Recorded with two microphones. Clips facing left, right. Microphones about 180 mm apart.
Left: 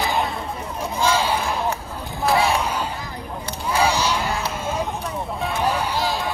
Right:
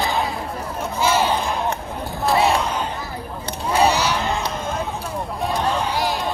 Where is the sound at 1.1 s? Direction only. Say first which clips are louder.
Right 2 dB; 10° left (ahead or behind).